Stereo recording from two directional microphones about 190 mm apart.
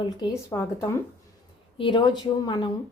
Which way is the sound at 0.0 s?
20° left (ahead or behind).